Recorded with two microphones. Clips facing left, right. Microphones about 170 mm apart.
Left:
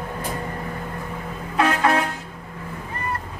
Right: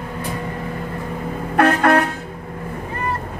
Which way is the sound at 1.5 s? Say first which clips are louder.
Right 5 dB; 60° right (ahead or behind).